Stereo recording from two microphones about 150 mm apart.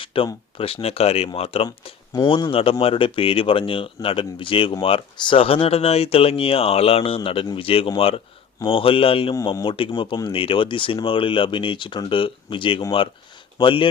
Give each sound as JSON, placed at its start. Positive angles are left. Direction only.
{"t": 0.0, "sound": "a sound", "side_deg": 35}
{"t": 0.3, "sound": "speech", "side_deg": 35}
{"t": 2.1, "sound": "speech", "side_deg": 30}